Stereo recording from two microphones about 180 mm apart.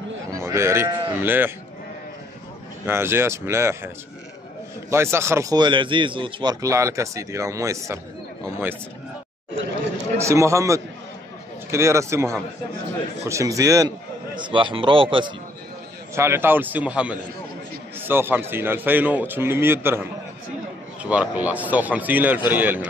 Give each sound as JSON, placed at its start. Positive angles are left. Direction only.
{"t": 0.3, "sound": "speech", "side_deg": -15}
{"t": 2.8, "sound": "a man's voice", "side_deg": -15}
{"t": 4.9, "sound": "a man's voice", "side_deg": -15}
{"t": 10.1, "sound": "a man's voice", "side_deg": -15}
{"t": 16.2, "sound": "a man's voice", "side_deg": -15}